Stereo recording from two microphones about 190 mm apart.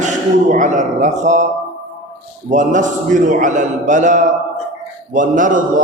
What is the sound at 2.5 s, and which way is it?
A man's voice, 40° right (ahead or behind).